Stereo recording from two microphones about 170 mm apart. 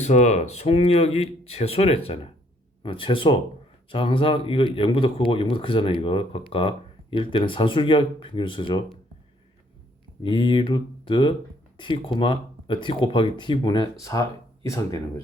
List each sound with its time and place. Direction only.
0.0 s speech: 40° left (ahead or behind)
10.2 s speech: 30° left (ahead or behind)